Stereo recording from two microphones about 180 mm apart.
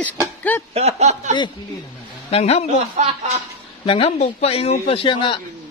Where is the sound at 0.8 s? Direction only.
35° right (ahead or behind).